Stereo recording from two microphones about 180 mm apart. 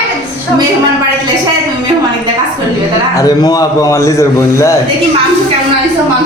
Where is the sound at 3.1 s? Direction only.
20° left (ahead or behind).